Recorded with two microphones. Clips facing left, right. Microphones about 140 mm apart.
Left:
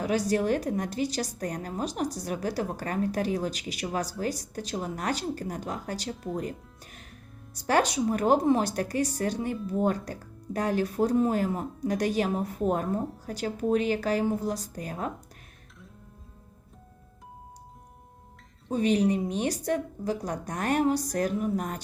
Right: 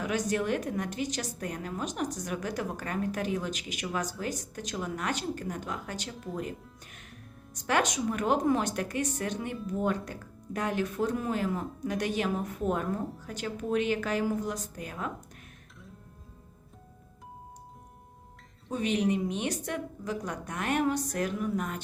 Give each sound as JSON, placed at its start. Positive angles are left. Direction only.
{"t": 0.0, "sound": "speech", "side_deg": 35}
{"t": 7.5, "sound": "speech", "side_deg": 35}
{"t": 18.7, "sound": "speech", "side_deg": 35}